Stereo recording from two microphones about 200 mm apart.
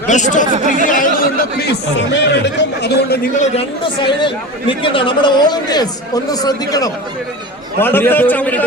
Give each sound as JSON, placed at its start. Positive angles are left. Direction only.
{"t": 0.1, "sound": "speech", "side_deg": 40}
{"t": 0.5, "sound": "speech", "side_deg": -35}
{"t": 0.9, "sound": "a sound", "side_deg": 40}
{"t": 2.0, "sound": "speech", "side_deg": 60}
{"t": 3.4, "sound": "a man's voice", "side_deg": 25}